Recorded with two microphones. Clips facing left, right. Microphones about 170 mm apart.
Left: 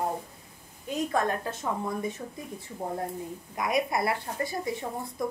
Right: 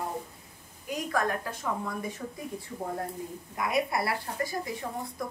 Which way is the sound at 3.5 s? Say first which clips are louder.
Left 1 dB; 20° left (ahead or behind).